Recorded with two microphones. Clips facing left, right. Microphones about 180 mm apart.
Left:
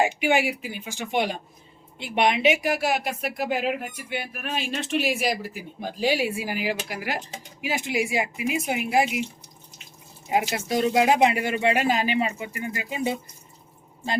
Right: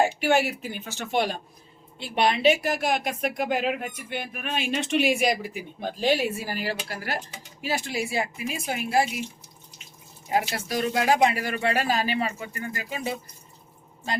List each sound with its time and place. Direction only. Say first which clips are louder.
0.0 s speech: even; 15° left (ahead or behind)
10.2 s speech: left 2 dB; 20° left (ahead or behind)